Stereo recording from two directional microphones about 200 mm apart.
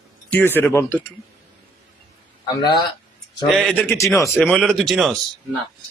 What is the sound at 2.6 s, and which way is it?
Speech, 20° left (ahead or behind).